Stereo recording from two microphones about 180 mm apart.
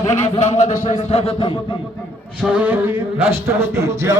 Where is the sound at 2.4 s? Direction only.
10° right (ahead or behind).